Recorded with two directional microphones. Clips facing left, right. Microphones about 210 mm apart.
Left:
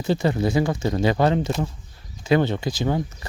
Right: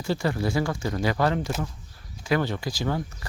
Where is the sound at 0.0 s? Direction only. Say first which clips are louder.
Left 5 dB; 20° left (ahead or behind).